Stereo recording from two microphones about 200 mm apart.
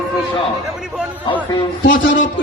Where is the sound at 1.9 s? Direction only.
70° left (ahead or behind).